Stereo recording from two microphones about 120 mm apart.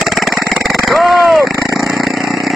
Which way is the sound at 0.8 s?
Centre (ahead or behind).